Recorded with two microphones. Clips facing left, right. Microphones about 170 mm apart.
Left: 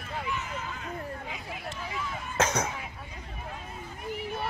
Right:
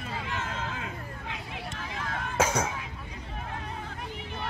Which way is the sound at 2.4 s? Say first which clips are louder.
Right 1 dB; 10° right (ahead or behind).